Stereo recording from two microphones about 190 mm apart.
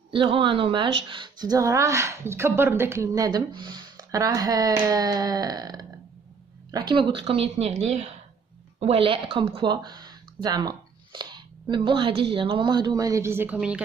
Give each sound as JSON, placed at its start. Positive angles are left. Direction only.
{"t": 0.1, "sound": "speech", "side_deg": -25}